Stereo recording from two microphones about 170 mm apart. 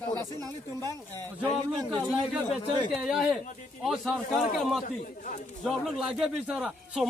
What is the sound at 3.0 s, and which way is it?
Speech, centre (ahead or behind).